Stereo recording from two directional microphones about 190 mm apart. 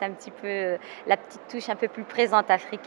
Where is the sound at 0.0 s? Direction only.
15° right (ahead or behind).